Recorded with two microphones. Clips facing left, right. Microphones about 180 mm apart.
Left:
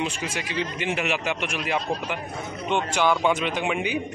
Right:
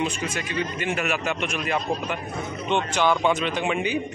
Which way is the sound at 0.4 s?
90° left.